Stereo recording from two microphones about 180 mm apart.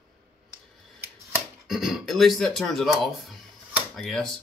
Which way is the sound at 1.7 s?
Centre (ahead or behind).